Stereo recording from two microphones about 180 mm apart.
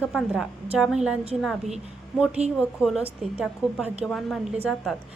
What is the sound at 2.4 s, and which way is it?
Speech, 35° right (ahead or behind).